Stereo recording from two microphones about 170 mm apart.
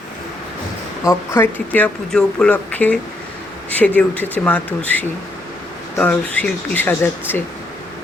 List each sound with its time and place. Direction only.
1.0 s speech: 15° left (ahead or behind)